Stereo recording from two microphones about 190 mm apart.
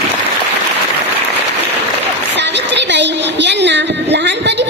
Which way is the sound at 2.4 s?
65° right (ahead or behind).